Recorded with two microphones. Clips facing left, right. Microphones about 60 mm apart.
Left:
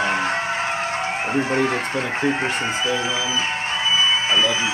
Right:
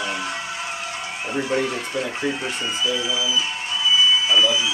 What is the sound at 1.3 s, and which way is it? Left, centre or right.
Speech, left.